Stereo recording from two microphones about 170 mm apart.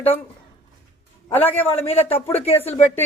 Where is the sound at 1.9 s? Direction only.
35° left (ahead or behind).